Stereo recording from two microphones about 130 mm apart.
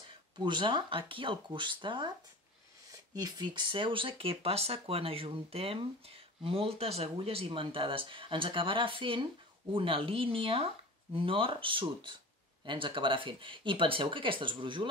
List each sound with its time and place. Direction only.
0.4 s speech: 35° right (ahead or behind)
3.2 s speech: 30° right (ahead or behind)